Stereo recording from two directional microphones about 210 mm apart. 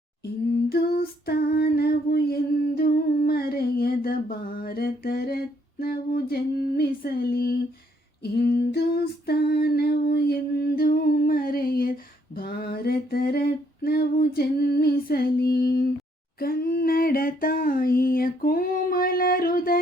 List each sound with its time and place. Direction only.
0.5 s humming: 45° left (ahead or behind)
8.2 s a sound: 50° left (ahead or behind)
16.4 s humming: 45° left (ahead or behind)